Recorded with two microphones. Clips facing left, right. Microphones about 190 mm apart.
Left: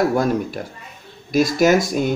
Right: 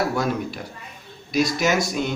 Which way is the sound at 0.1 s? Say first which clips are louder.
Left 5 dB; 45° left (ahead or behind).